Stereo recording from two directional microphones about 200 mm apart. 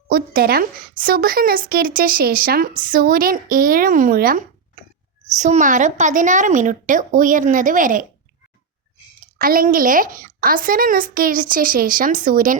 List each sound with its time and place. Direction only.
0.1 s a woman's voice: 45° right (ahead or behind)
9.2 s a woman's voice: 45° right (ahead or behind)